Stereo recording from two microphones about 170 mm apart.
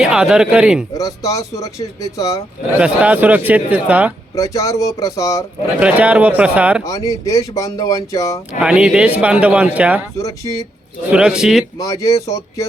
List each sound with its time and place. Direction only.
0.0 s a man's voice: 5° right (ahead or behind)
0.9 s speech: 20° left (ahead or behind)
2.7 s a man's voice: 10° right (ahead or behind)
4.4 s speech: 20° left (ahead or behind)
5.8 s a man's voice: 10° right (ahead or behind)
6.8 s speech: 20° left (ahead or behind)
8.6 s a man's voice: 5° right (ahead or behind)
10.2 s speech: 20° left (ahead or behind)
11.1 s a man's voice: 5° right (ahead or behind)
11.8 s speech: 20° left (ahead or behind)